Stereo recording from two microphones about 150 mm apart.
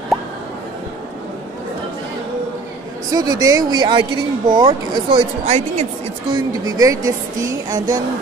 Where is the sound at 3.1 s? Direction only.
25° right (ahead or behind); by 5.9 s 45° right (ahead or behind).